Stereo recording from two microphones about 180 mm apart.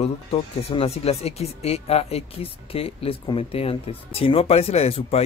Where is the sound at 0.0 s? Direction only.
35° left (ahead or behind).